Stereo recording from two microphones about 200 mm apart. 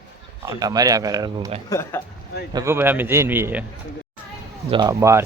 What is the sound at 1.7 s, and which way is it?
Speech, 10° left (ahead or behind).